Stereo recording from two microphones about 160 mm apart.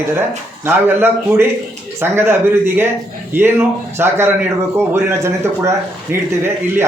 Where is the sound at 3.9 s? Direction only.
15° right (ahead or behind).